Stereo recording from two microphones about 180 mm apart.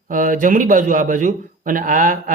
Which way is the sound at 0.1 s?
45° right (ahead or behind).